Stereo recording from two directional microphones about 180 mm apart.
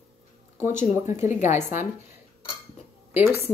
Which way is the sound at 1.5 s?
15° right (ahead or behind).